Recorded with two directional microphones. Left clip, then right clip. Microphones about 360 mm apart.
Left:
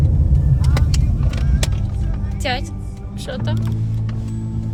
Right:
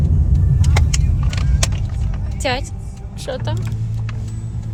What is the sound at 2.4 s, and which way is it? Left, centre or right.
Music, centre.